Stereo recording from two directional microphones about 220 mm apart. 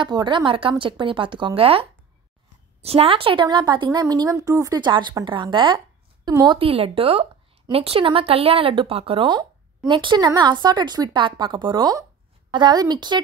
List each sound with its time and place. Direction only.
0.0 s a woman's voice: 20° right (ahead or behind)